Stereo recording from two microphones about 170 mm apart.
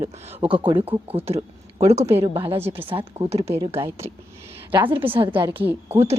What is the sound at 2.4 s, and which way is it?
Speech, 15° right (ahead or behind).